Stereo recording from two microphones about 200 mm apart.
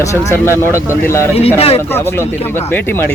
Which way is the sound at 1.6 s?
30° left (ahead or behind).